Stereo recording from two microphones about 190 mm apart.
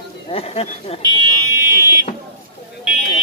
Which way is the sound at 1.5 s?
15° right (ahead or behind).